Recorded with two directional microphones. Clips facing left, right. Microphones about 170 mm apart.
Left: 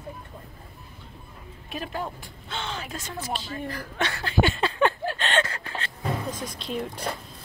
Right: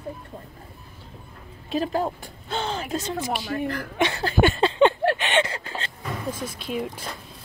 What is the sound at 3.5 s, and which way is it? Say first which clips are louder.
Speech: right 7 dB; 50° right (ahead or behind).